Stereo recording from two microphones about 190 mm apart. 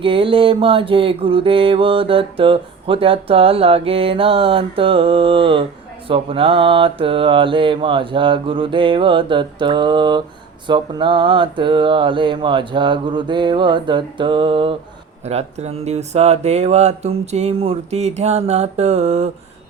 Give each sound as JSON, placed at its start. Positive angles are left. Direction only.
{"t": 0.0, "sound": "mantra", "side_deg": -30}
{"t": 15.2, "sound": "speech", "side_deg": -35}